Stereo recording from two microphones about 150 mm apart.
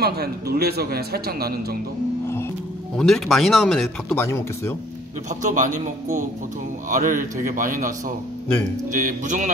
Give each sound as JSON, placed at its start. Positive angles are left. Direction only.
{"t": 0.0, "sound": "speech", "side_deg": -90}
{"t": 3.0, "sound": "speech", "side_deg": 0}
{"t": 4.2, "sound": "speech", "side_deg": 15}
{"t": 5.4, "sound": "a man's voice", "side_deg": -60}
{"t": 8.9, "sound": "a man's voice", "side_deg": -60}